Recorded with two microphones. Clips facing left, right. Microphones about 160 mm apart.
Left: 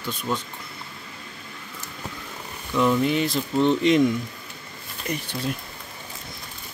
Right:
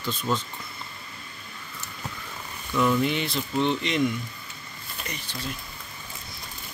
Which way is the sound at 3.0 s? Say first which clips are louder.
Left 4 dB; 40° left (ahead or behind).